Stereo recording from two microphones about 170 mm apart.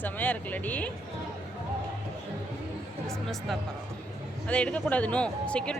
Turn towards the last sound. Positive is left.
turn(degrees=5)  # may be behind; listen again after turning